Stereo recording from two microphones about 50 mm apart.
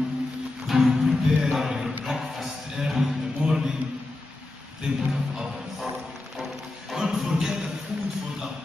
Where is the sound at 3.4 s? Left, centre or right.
Right.